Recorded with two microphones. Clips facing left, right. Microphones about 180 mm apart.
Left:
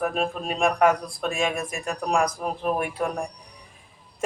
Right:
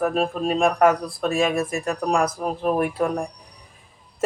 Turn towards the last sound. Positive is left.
turn(degrees=0)  # may be behind; listen again after turning